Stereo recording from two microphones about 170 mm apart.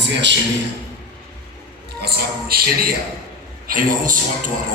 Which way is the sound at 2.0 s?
65° right (ahead or behind).